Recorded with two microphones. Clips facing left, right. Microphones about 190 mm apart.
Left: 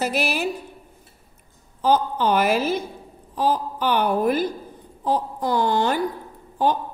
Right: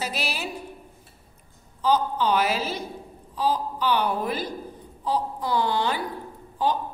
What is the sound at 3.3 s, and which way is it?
A woman's voice, 50° left (ahead or behind).